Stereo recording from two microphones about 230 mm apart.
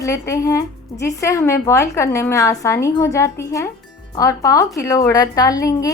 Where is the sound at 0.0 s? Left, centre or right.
Centre.